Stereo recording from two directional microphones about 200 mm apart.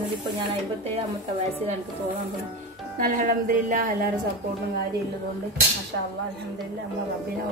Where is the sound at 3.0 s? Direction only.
40° right (ahead or behind).